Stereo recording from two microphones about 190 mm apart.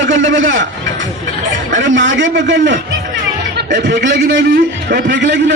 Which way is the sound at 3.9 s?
65° right (ahead or behind).